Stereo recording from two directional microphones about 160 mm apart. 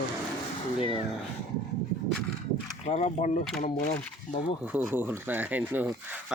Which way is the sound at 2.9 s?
45° left (ahead or behind).